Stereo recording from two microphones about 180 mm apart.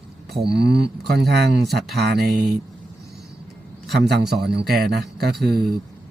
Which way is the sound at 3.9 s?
65° right (ahead or behind).